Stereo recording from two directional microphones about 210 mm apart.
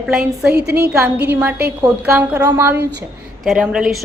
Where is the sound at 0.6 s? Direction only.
50° right (ahead or behind).